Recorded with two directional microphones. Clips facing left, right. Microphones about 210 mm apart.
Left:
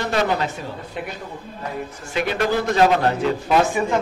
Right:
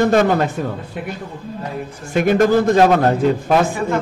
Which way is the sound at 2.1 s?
50° right (ahead or behind).